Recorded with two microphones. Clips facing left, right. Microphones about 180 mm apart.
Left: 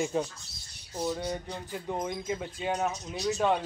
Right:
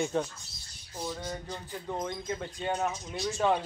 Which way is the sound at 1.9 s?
10° left (ahead or behind).